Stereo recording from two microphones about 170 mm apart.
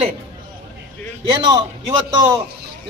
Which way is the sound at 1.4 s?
25° right (ahead or behind).